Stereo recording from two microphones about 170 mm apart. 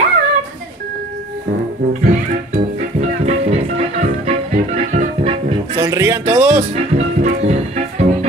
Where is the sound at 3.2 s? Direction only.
35° right (ahead or behind).